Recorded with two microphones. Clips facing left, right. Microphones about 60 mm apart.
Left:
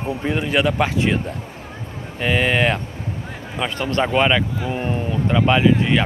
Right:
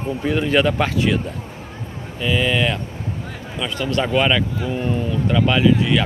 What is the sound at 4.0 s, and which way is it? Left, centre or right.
Speech, left.